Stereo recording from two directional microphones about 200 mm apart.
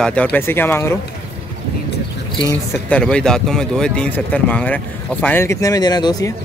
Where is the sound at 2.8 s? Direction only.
5° left (ahead or behind).